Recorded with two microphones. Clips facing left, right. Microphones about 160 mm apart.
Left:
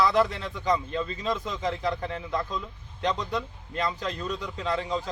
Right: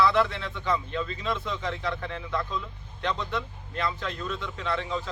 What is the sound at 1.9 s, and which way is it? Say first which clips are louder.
Speech: left 2 dB; 25° left (ahead or behind).